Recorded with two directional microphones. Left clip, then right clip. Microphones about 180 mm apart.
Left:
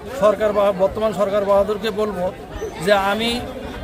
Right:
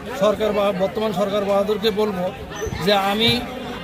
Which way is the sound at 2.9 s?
5° left (ahead or behind).